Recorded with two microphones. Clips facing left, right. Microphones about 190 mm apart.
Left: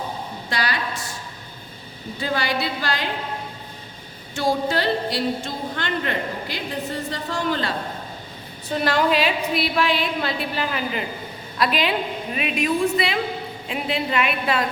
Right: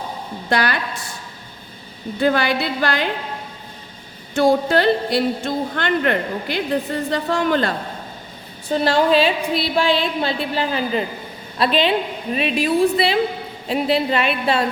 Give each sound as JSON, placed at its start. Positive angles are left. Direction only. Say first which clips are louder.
{"t": 0.5, "sound": "a woman's voice", "louder": "right 6 dB", "side_deg": -55}
{"t": 2.2, "sound": "a woman's voice", "louder": "right 6 dB", "side_deg": -60}
{"t": 4.4, "sound": "a woman's voice", "louder": "right 6 dB", "side_deg": -55}
{"t": 8.7, "sound": "a woman's voice", "louder": "right 4 dB", "side_deg": -30}